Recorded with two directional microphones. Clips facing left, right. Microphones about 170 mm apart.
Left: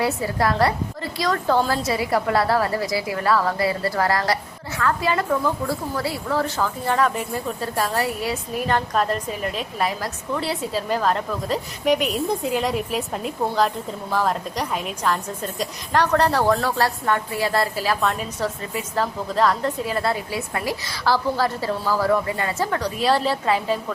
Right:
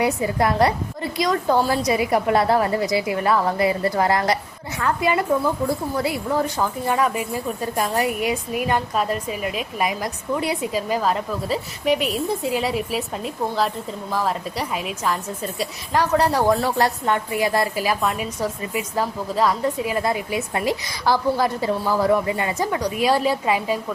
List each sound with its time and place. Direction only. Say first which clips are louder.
0.0 s a woman's voice: right 2 dB; 20° right (ahead or behind)